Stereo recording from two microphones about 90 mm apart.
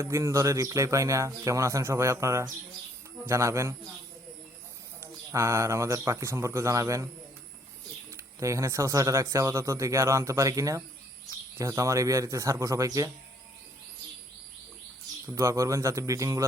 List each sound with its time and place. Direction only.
0.0 s speech: 35° right (ahead or behind)
5.3 s speech: 30° right (ahead or behind)
8.1 s speech: 35° right (ahead or behind)
15.4 s speech: 35° right (ahead or behind)